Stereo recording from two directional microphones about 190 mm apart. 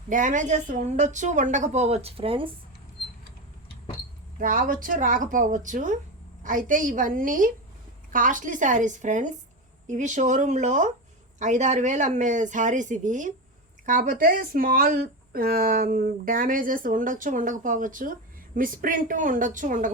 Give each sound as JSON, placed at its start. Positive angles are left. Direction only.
{"t": 0.1, "sound": "a woman's voice", "side_deg": -40}
{"t": 4.4, "sound": "a woman's voice", "side_deg": -45}